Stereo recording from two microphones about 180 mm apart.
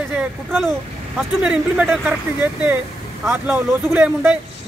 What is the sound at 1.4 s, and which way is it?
A man's voice, 5° right (ahead or behind).